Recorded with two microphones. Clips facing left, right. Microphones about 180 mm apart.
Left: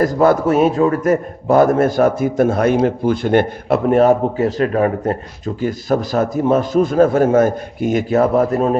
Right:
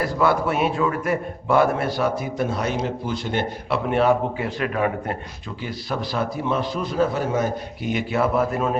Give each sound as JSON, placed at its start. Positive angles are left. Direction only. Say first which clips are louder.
{"t": 0.0, "sound": "a man's voice", "louder": "left 7 dB", "side_deg": 45}